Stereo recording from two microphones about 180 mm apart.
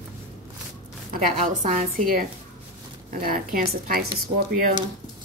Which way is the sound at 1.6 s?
50° right (ahead or behind).